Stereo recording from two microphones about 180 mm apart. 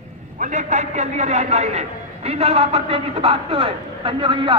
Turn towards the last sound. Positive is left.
turn(degrees=-30)  # may be behind; listen again after turning